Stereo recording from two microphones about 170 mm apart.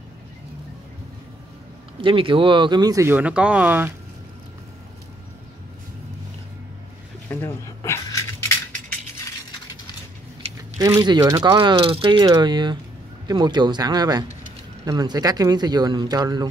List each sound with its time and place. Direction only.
2.0 s speech: 30° right (ahead or behind); by 3.9 s 10° right (ahead or behind)
7.2 s a sound: 15° left (ahead or behind)
10.8 s speech: 20° right (ahead or behind)